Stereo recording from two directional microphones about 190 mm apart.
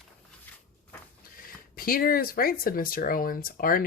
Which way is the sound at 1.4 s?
50° left (ahead or behind).